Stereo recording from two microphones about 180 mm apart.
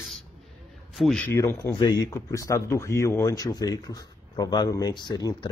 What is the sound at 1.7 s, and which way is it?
Speech, 25° left (ahead or behind).